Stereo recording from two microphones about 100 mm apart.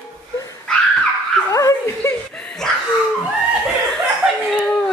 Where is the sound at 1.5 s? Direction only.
35° left (ahead or behind).